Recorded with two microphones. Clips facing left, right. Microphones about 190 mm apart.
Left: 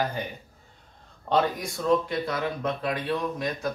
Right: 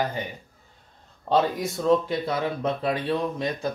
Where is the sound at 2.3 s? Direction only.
30° right (ahead or behind).